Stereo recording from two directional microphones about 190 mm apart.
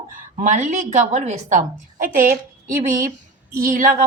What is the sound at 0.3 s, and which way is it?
A woman's voice, 40° right (ahead or behind).